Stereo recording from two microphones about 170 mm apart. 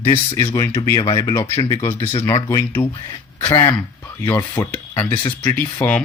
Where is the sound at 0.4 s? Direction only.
15° left (ahead or behind).